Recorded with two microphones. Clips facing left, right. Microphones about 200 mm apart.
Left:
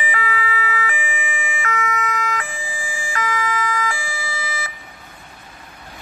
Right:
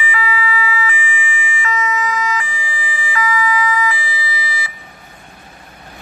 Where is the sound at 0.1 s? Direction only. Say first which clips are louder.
Right 5 dB; 55° left (ahead or behind).